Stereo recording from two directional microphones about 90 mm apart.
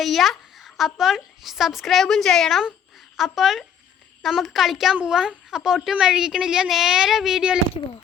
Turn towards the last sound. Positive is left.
turn(degrees=-5)  # may be behind; listen again after turning